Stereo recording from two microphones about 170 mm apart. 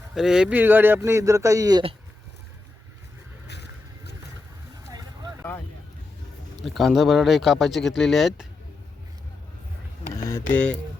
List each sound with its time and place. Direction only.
0.1 s speech: 5° right (ahead or behind); by 1.8 s 20° right (ahead or behind)
3.4 s vehicle: 80° left
4.9 s vehicle: 25° right (ahead or behind)
6.6 s speech: centre (ahead or behind)
10.5 s music: 5° left (ahead or behind)